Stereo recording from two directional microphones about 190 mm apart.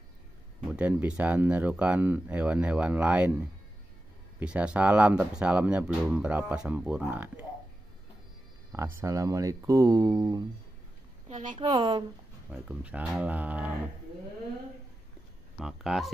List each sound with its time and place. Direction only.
0.7 s speech: 5° right (ahead or behind)
8.7 s speech: 15° right (ahead or behind)
11.2 s speech: 40° right (ahead or behind)
11.6 s a woman's voice: 20° right (ahead or behind)
12.4 s speech: 5° right (ahead or behind)
15.6 s speech: centre (ahead or behind)